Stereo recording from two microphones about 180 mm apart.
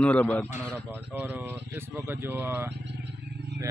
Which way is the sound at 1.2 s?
10° right (ahead or behind).